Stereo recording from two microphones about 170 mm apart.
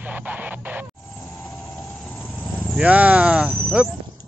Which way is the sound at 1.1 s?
5° left (ahead or behind).